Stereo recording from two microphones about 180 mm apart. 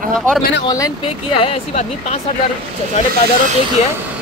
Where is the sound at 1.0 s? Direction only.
35° left (ahead or behind).